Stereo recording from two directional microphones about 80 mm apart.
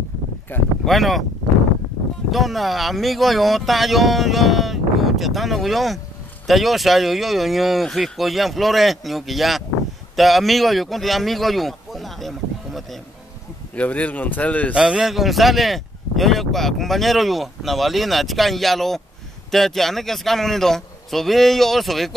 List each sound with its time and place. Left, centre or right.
0.5 s speech: left
0.8 s speech: centre
2.3 s speech: centre
10.1 s a sound: centre
13.7 s speech: centre
14.7 s speech: centre